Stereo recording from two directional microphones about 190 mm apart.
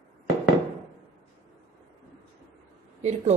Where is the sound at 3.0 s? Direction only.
35° right (ahead or behind).